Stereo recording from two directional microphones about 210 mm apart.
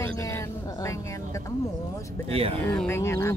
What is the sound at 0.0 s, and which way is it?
Music, 10° left (ahead or behind).